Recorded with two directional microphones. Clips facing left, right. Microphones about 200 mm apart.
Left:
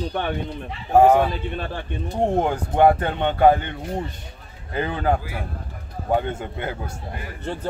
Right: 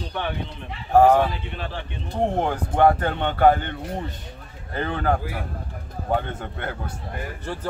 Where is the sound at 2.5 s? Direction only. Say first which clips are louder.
Left 1 dB; 15° left (ahead or behind).